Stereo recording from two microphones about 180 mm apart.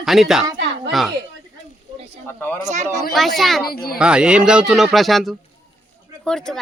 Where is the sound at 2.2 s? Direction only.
10° left (ahead or behind).